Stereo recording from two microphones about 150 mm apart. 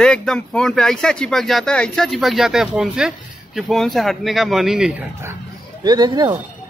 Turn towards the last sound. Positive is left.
turn(degrees=-25)  # may be behind; listen again after turning